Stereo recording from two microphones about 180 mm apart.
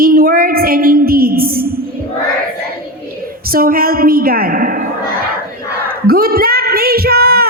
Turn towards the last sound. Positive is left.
turn(degrees=-55)  # may be behind; listen again after turning